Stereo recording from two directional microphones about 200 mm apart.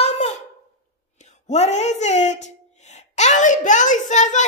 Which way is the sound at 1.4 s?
35° left (ahead or behind).